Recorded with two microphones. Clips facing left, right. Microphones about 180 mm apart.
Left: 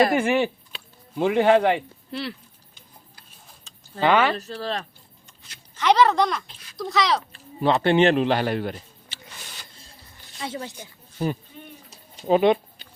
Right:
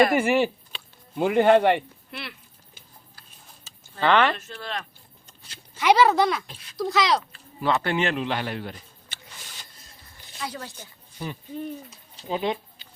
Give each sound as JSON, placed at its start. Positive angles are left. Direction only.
{"t": 0.2, "sound": "speech", "side_deg": -5}
{"t": 2.0, "sound": "speech", "side_deg": 30}
{"t": 3.7, "sound": "vehicle", "side_deg": -5}
{"t": 4.0, "sound": "speech", "side_deg": 10}
{"t": 4.4, "sound": "speech", "side_deg": 35}
{"t": 5.7, "sound": "speech", "side_deg": -10}
{"t": 7.6, "sound": "speech", "side_deg": 25}
{"t": 8.1, "sound": "a man's voice", "side_deg": 40}
{"t": 9.1, "sound": "a sound", "side_deg": -50}
{"t": 10.4, "sound": "speech", "side_deg": 20}
{"t": 12.3, "sound": "speech", "side_deg": 65}